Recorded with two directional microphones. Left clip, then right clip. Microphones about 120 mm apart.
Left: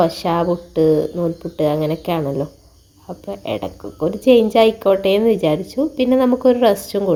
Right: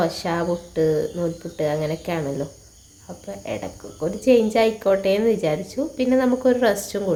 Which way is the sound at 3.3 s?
60° left (ahead or behind).